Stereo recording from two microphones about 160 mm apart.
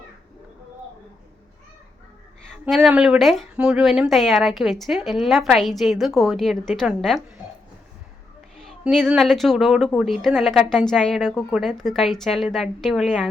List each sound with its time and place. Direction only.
2.5 s a woman's voice: centre (ahead or behind)
8.6 s a woman's voice: centre (ahead or behind)